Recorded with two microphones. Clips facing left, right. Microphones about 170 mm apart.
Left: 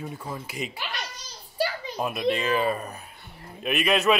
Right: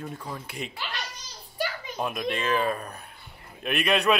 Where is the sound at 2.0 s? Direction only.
5° left (ahead or behind).